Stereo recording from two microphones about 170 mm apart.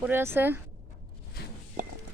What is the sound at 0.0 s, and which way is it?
Speech, 15° right (ahead or behind).